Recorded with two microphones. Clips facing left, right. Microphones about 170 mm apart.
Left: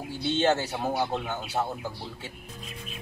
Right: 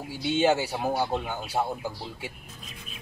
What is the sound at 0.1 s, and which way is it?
Speech, 10° right (ahead or behind).